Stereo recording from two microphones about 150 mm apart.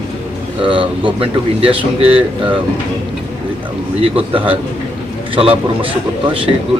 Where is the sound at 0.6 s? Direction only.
35° right (ahead or behind).